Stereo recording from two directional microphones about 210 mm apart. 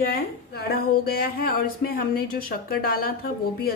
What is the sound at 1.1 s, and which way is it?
Speech, 45° left (ahead or behind).